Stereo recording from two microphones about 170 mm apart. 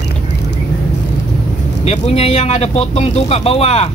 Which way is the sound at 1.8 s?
40° left (ahead or behind).